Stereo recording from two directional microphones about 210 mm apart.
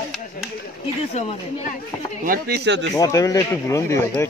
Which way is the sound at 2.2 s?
50° right (ahead or behind).